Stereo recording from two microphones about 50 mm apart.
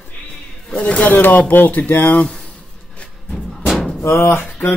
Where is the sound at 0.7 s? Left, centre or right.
Left.